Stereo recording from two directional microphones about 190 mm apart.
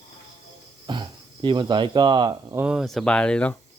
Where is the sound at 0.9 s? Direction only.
25° right (ahead or behind).